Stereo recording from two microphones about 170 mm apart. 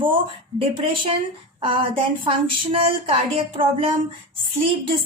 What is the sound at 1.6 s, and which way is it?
Speech, 30° right (ahead or behind).